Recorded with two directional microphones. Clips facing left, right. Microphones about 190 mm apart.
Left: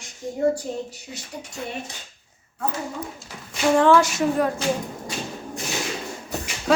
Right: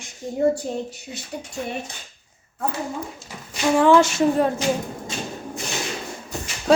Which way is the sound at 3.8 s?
20° right (ahead or behind).